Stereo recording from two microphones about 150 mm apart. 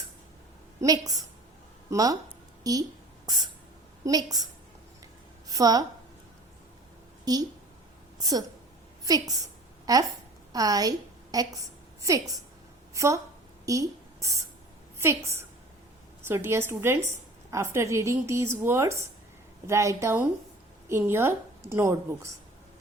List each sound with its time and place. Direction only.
0.8 s a woman's voice: 25° right (ahead or behind)
3.2 s spray: 25° right (ahead or behind)
4.0 s a woman's voice: 25° right (ahead or behind)
5.5 s a woman's voice: 25° right (ahead or behind)
7.3 s a woman's voice: 25° right (ahead or behind)
12.9 s a woman's voice: 20° right (ahead or behind)
13.7 s writing: 20° right (ahead or behind)
14.9 s a woman's voice: 20° right (ahead or behind)